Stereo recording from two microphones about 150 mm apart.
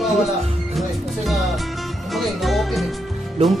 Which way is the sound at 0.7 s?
Centre (ahead or behind).